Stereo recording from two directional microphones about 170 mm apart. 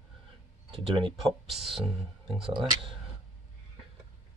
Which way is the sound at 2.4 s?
30° right (ahead or behind).